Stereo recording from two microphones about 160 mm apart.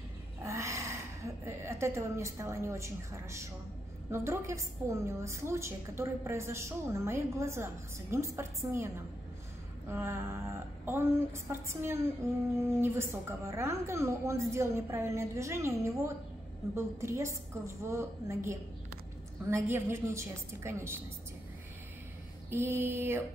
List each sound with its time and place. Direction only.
0.4 s a sound: 15° right (ahead or behind)
1.4 s a woman's voice: 15° right (ahead or behind)
22.5 s a woman's voice: 15° right (ahead or behind)